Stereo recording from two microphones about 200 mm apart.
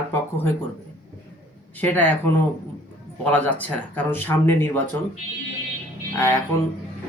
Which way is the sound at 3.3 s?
5° left (ahead or behind).